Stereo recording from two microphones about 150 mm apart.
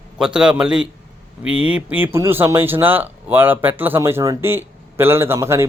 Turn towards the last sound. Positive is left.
turn(degrees=-20)  # may be behind; listen again after turning